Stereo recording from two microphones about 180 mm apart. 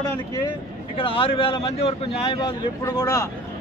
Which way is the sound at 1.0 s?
30° left (ahead or behind).